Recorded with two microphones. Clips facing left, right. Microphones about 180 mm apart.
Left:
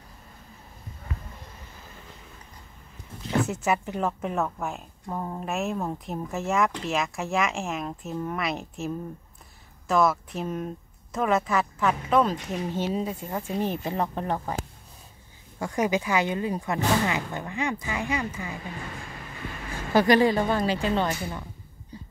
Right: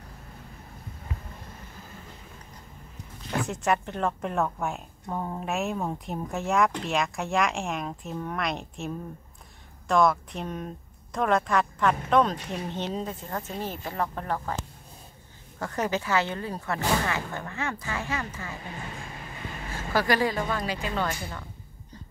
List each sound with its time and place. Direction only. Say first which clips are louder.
3.3 s speech: left 2 dB; 5° left (ahead or behind)
15.6 s speech: left 3 dB; 10° left (ahead or behind)
19.9 s speech: left 6 dB; 20° left (ahead or behind)